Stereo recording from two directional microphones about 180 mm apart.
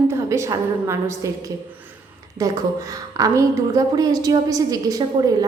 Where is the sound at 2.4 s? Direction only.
20° right (ahead or behind).